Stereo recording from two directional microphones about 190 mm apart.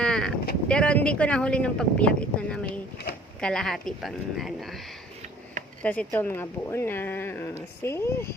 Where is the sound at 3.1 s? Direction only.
55° left (ahead or behind).